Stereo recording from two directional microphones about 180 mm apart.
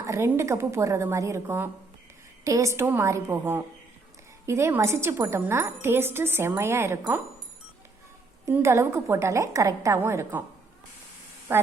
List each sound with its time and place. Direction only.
0.0 s speech: 15° right (ahead or behind)
8.4 s speech: 15° right (ahead or behind)
11.5 s speech: 15° right (ahead or behind)